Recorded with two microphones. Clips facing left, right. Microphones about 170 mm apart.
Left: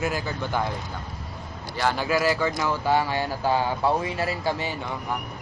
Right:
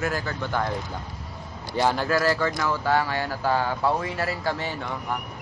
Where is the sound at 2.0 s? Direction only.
10° left (ahead or behind).